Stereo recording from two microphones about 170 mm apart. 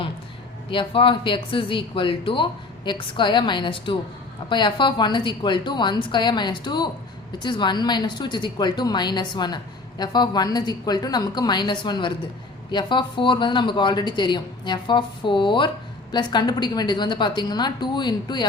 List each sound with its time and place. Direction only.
0.7 s speech: 30° left (ahead or behind)